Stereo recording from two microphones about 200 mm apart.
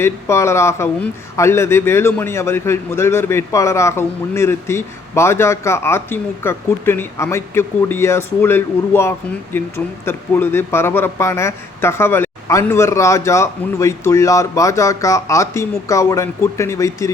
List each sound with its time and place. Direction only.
0.0 s a man's voice: 15° left (ahead or behind)